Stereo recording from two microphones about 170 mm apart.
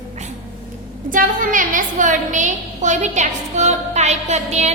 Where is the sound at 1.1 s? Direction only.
50° right (ahead or behind).